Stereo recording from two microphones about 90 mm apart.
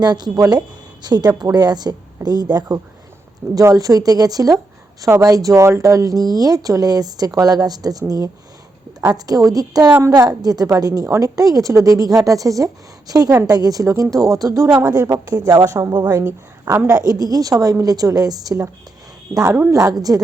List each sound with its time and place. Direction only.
0.0 s a woman's voice: 50° right (ahead or behind)
16.2 s a woman's voice: 30° right (ahead or behind)
17.0 s a woman's voice: 45° right (ahead or behind)
19.3 s speech: 20° right (ahead or behind)
19.7 s a woman's voice: 40° right (ahead or behind)